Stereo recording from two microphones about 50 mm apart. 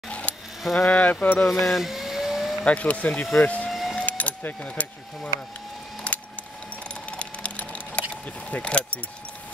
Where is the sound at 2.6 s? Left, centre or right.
Left.